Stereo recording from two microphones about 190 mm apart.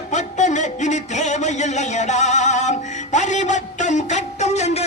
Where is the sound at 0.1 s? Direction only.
40° left (ahead or behind).